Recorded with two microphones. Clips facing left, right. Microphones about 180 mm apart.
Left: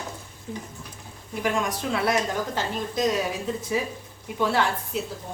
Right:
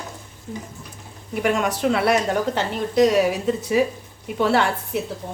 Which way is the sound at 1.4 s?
70° right (ahead or behind).